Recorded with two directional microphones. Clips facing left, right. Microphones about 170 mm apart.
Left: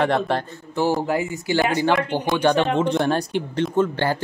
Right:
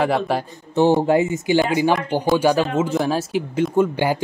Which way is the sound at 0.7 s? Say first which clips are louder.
Right 6 dB; 25° right (ahead or behind).